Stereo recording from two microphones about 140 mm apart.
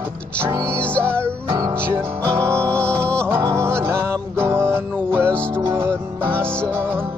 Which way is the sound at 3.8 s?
20° right (ahead or behind).